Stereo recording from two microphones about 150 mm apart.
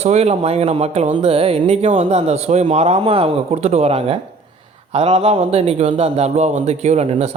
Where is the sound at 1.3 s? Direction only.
35° right (ahead or behind).